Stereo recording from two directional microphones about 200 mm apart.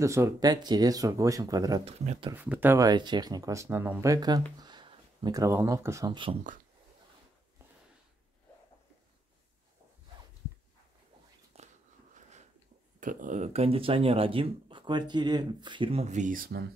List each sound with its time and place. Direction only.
0.0 s speech: 15° right (ahead or behind)
2.3 s speech: 10° right (ahead or behind)
11.6 s a sound: 30° right (ahead or behind)
13.0 s speech: 40° right (ahead or behind)